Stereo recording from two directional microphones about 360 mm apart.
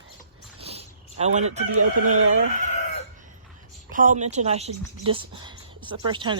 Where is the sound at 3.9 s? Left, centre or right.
Right.